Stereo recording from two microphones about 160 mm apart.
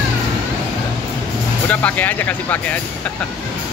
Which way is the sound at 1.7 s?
10° left (ahead or behind).